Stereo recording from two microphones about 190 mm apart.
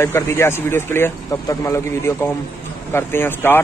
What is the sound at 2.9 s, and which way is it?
Speech, 10° left (ahead or behind).